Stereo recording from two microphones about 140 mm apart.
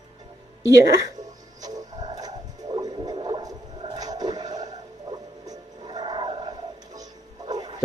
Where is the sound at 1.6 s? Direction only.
25° right (ahead or behind).